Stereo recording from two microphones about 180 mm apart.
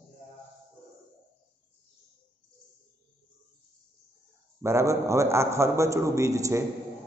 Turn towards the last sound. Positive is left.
turn(degrees=-15)  # may be behind; listen again after turning